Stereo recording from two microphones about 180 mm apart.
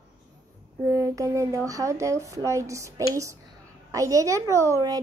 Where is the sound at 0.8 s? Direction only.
15° right (ahead or behind).